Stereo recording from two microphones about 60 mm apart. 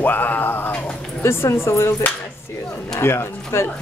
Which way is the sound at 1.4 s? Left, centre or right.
Left.